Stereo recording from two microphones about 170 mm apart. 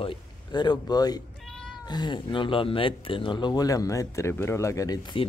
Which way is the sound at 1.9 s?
25° left (ahead or behind).